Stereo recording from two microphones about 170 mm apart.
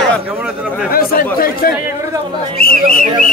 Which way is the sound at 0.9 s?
60° left (ahead or behind).